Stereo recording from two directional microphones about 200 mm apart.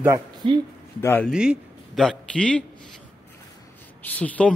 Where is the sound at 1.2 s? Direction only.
Centre (ahead or behind).